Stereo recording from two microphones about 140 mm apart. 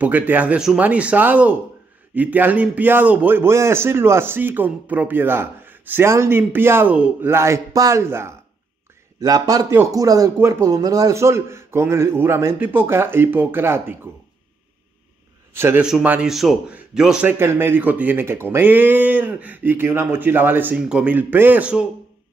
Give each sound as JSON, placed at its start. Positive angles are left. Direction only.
{"t": 0.0, "sound": "a man's voice", "side_deg": -10}
{"t": 15.5, "sound": "a man's voice", "side_deg": -15}